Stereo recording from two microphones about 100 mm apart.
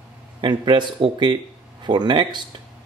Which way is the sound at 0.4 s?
50° right (ahead or behind).